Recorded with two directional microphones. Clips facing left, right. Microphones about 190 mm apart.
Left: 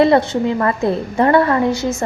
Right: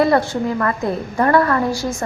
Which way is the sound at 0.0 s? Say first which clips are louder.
Left 3 dB; 20° left (ahead or behind).